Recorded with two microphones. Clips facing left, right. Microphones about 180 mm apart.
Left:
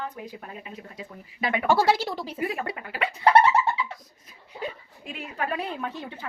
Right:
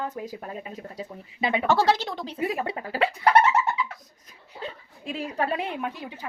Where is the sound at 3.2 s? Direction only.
30° left (ahead or behind).